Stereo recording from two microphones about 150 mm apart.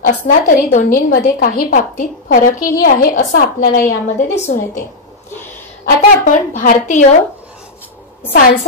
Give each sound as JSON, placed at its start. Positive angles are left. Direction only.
{"t": 0.0, "sound": "a woman's voice", "side_deg": 60}
{"t": 5.9, "sound": "a woman's voice", "side_deg": 60}